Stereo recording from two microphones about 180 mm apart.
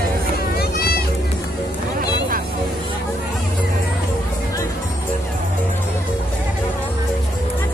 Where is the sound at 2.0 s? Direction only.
50° right (ahead or behind).